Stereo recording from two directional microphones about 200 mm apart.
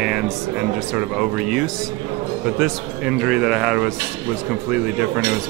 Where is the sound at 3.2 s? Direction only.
5° right (ahead or behind).